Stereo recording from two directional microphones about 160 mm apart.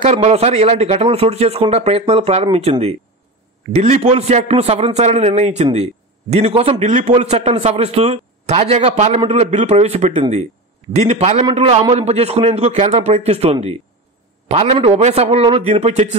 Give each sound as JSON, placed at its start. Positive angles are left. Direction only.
{"t": 0.0, "sound": "a man's voice", "side_deg": -40}